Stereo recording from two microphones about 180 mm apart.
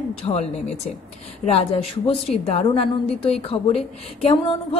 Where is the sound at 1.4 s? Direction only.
35° left (ahead or behind).